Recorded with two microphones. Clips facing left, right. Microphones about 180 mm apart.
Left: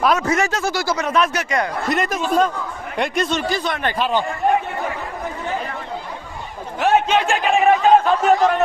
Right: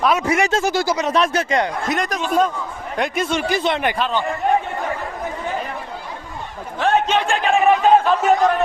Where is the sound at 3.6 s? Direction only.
25° right (ahead or behind).